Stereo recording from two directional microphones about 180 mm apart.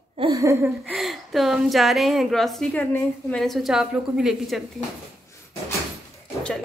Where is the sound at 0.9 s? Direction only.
Centre (ahead or behind).